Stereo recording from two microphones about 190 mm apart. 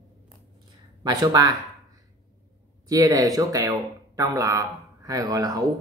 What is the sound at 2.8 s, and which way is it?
Speech, 20° right (ahead or behind).